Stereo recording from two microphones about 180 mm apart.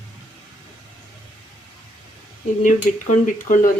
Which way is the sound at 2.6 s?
45° left (ahead or behind).